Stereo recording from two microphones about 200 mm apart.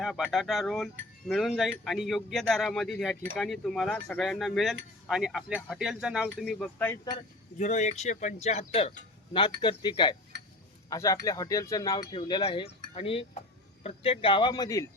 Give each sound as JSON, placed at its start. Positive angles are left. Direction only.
{"t": 0.0, "sound": "speech", "side_deg": 0}
{"t": 7.6, "sound": "speech", "side_deg": 35}